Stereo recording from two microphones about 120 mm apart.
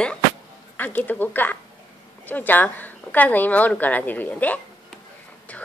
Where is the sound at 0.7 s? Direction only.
15° left (ahead or behind).